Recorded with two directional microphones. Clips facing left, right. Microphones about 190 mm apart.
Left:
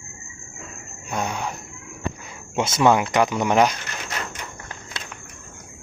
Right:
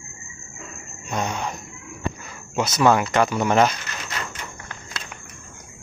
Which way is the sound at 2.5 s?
25° left (ahead or behind).